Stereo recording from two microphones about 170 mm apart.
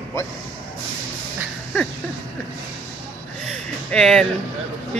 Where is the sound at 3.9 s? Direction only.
5° left (ahead or behind).